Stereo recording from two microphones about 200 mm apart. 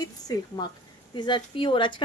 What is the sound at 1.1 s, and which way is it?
Speech, 20° left (ahead or behind).